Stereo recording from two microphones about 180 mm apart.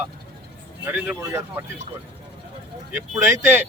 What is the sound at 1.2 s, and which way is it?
Speech, 15° right (ahead or behind).